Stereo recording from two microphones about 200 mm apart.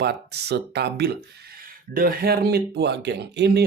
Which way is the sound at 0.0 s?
55° right (ahead or behind).